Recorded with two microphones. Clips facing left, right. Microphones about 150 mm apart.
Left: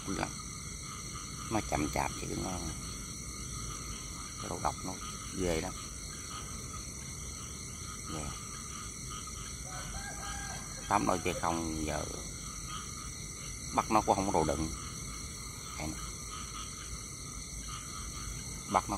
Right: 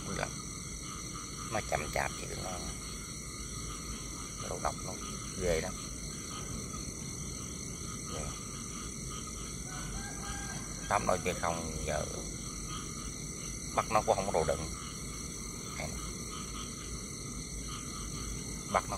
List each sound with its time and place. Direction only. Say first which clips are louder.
1.5 s speech: left 2 dB; 15° left (ahead or behind)
5.4 s speech: right 1 dB; 15° left (ahead or behind)
10.9 s speech: left 1 dB; 15° left (ahead or behind)
13.9 s speech: left 1 dB; 20° left (ahead or behind)
18.7 s a sound: left 2 dB; 20° left (ahead or behind)